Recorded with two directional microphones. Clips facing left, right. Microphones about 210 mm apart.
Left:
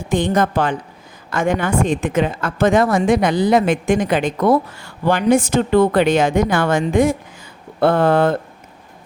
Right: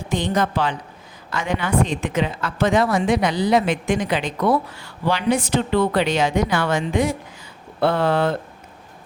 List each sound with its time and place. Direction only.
0.1 s a woman's voice: 50° left (ahead or behind)